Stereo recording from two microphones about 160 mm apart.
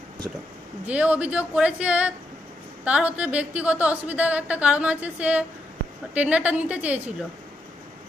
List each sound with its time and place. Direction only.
0.2 s a woman's voice: centre (ahead or behind)